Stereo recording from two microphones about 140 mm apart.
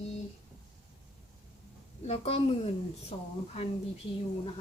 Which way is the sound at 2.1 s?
45° left (ahead or behind).